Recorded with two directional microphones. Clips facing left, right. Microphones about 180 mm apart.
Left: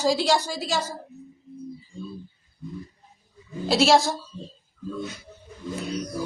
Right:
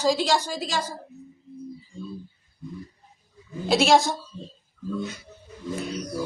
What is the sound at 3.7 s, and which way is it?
Speech, centre (ahead or behind).